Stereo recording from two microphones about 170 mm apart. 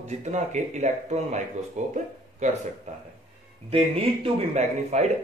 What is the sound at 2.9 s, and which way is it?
A man's voice, 45° right (ahead or behind).